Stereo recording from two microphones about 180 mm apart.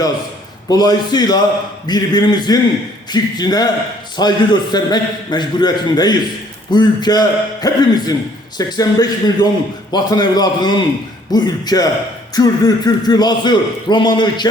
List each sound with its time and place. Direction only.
0.7 s a man's voice: 20° left (ahead or behind)